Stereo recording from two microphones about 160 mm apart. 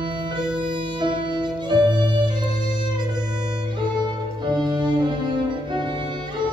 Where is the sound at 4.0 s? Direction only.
25° right (ahead or behind).